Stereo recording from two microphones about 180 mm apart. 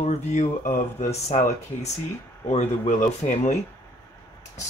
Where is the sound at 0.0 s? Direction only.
40° left (ahead or behind).